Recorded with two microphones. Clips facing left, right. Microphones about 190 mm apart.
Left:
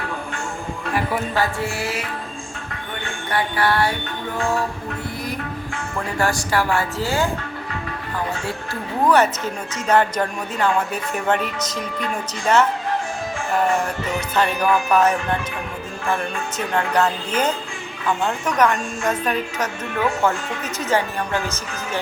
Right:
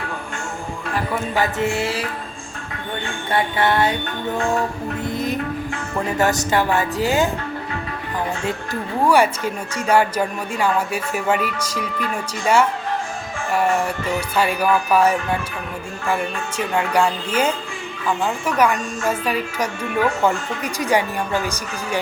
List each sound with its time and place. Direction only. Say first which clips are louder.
1.4 s a woman's voice: right 6 dB; 20° right (ahead or behind)
3.3 s a woman's voice: right 2 dB; 20° right (ahead or behind)
5.1 s music: right 6 dB; 20° right (ahead or behind)
6.1 s a woman's voice: right 2 dB; 20° right (ahead or behind)
8.4 s speech: right 3 dB; 15° right (ahead or behind)
14.3 s speech: even; 10° right (ahead or behind)